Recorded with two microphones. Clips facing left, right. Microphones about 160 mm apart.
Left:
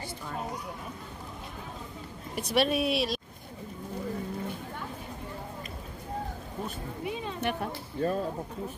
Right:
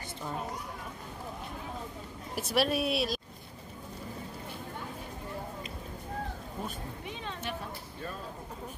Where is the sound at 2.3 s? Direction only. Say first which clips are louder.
Left 2 dB; 5° right (ahead or behind).